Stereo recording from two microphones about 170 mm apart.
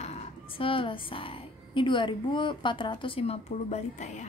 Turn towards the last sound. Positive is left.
turn(degrees=40)  # may be behind; listen again after turning